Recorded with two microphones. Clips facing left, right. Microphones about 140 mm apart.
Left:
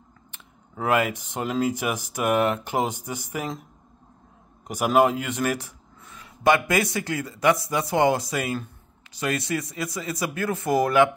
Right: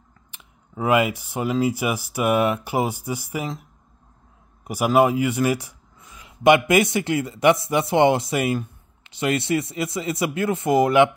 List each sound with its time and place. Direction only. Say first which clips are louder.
0.3 s speech: right 4 dB; 10° right (ahead or behind)
4.6 s speech: right 2 dB; 5° right (ahead or behind)